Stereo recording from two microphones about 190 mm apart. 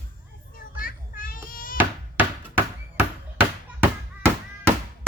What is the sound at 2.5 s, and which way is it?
Bouncing, 10° right (ahead or behind).